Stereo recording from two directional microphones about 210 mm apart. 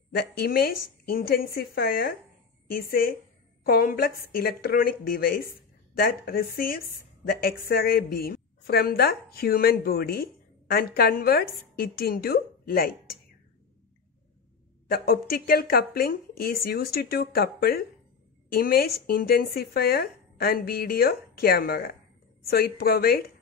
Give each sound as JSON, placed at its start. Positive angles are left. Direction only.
{"t": 0.1, "sound": "a woman's voice", "side_deg": 50}
{"t": 14.9, "sound": "a woman's voice", "side_deg": 45}